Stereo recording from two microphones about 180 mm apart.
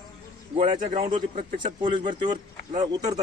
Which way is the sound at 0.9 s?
25° right (ahead or behind).